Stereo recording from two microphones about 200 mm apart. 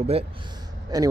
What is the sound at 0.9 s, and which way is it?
Speech, 20° right (ahead or behind).